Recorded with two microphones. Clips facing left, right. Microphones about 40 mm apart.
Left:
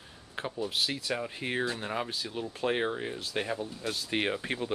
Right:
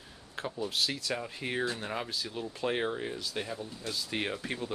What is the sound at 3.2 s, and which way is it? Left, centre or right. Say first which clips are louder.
Speech: left 4 dB; left.